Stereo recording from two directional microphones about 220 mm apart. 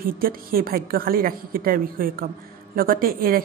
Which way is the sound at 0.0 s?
40° right (ahead or behind).